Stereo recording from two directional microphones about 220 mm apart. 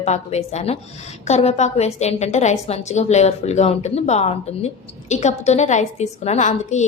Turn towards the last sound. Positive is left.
turn(degrees=30)  # may be behind; listen again after turning